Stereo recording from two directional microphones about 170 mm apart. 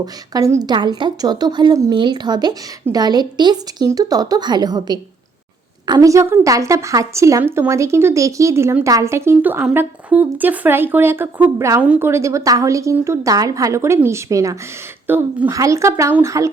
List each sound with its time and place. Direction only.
0.0 s a woman's voice: 20° right (ahead or behind)